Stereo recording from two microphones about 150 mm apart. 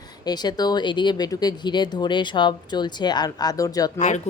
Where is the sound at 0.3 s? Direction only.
25° left (ahead or behind).